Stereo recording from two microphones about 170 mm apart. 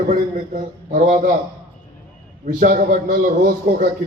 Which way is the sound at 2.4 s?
55° right (ahead or behind).